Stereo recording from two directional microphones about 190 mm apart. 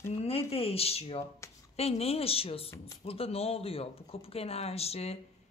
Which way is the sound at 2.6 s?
15° left (ahead or behind).